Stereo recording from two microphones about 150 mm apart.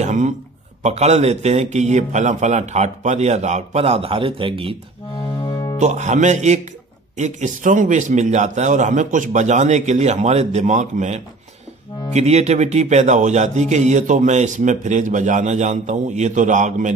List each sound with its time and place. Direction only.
0.0 s a sound: 50° right (ahead or behind)
0.8 s speech: 45° right (ahead or behind)
5.4 s music: 25° left (ahead or behind)
5.8 s speech: 50° right (ahead or behind)